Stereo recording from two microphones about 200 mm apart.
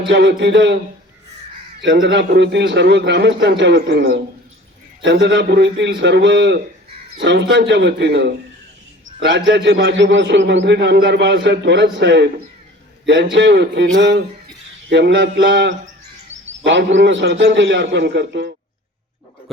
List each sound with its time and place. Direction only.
0.1 s a man's voice: 60° right (ahead or behind)
1.8 s a man's voice: 60° right (ahead or behind)
5.2 s a man's voice: 60° right (ahead or behind)
9.6 s a man's voice: 55° right (ahead or behind)
13.3 s a man's voice: 60° right (ahead or behind)